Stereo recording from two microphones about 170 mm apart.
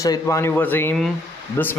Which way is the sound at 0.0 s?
20° left (ahead or behind).